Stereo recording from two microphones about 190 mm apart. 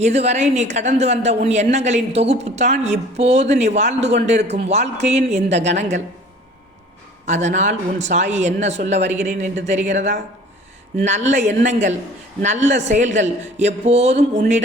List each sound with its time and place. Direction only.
0.0 s speech: 35° right (ahead or behind)
7.3 s speech: 40° right (ahead or behind)